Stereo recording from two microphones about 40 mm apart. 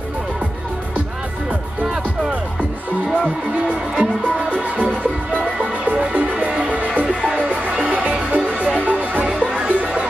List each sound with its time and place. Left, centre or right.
5.6 s music: right
9.3 s music: right
9.7 s music: right